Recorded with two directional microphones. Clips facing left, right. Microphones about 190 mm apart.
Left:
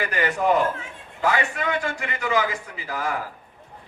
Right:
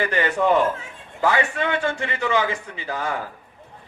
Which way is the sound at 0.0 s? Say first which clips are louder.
Right 2 dB; 30° right (ahead or behind).